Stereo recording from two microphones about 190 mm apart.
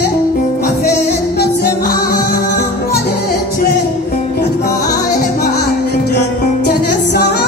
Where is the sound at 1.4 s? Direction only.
55° left (ahead or behind).